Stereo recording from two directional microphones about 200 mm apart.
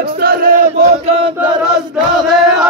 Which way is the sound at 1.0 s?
30° right (ahead or behind).